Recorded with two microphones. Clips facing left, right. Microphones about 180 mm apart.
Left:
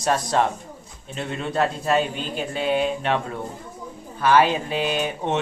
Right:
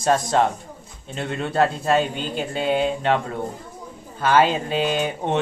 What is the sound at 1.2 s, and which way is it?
Speech, 40° right (ahead or behind).